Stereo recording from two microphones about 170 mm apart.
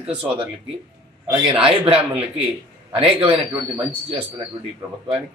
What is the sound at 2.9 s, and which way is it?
Speech, 30° right (ahead or behind).